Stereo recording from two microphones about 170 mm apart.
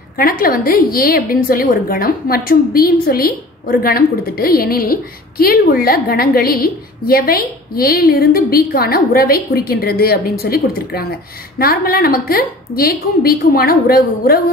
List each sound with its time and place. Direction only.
0.2 s a woman's voice: 55° left (ahead or behind)